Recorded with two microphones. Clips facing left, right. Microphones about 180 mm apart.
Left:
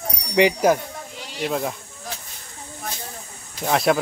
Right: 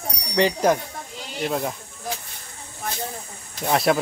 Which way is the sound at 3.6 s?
Centre (ahead or behind).